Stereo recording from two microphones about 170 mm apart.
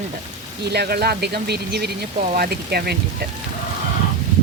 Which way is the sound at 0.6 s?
70° right (ahead or behind).